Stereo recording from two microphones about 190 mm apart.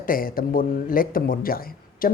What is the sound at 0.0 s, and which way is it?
Speech, 50° left (ahead or behind).